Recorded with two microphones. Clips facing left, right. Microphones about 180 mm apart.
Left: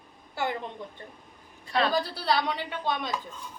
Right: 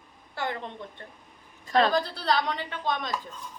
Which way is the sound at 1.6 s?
45° right (ahead or behind).